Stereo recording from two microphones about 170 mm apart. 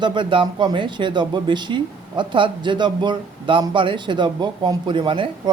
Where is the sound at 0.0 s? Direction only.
25° right (ahead or behind).